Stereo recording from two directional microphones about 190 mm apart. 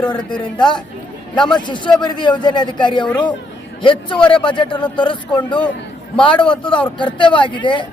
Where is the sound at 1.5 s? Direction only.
25° left (ahead or behind).